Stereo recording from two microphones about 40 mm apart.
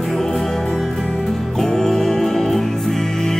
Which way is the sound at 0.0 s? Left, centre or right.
Centre.